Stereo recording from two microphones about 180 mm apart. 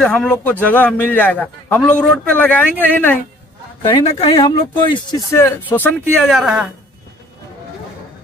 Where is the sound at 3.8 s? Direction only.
30° left (ahead or behind).